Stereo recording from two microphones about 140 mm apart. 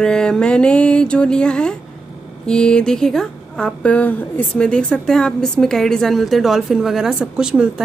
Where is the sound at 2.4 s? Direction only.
5° left (ahead or behind).